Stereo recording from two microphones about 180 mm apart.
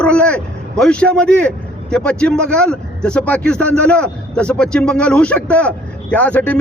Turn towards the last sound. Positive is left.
turn(degrees=10)  # may be behind; listen again after turning